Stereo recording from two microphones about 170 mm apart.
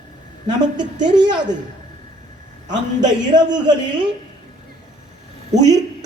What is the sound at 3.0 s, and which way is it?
Speech, 25° right (ahead or behind).